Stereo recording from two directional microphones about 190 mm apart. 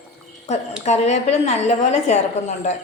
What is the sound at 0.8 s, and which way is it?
A woman's voice, 35° left (ahead or behind).